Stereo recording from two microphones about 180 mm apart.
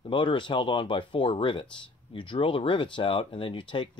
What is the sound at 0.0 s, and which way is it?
Speech, 30° left (ahead or behind).